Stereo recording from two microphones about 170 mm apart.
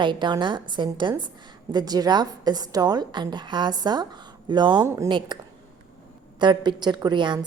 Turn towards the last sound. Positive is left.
turn(degrees=-25)  # may be behind; listen again after turning